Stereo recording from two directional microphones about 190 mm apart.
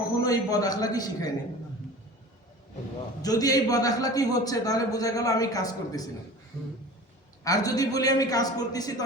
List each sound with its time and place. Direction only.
0.2 s a man's voice: 20° left (ahead or behind)
3.2 s a man's voice: 20° left (ahead or behind)
7.4 s a man's voice: 20° left (ahead or behind)